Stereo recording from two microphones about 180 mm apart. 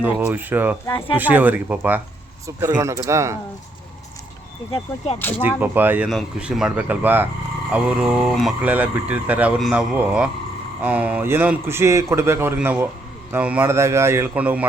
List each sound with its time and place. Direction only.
0.0 s speech: 10° right (ahead or behind)
5.4 s speech: 10° right (ahead or behind)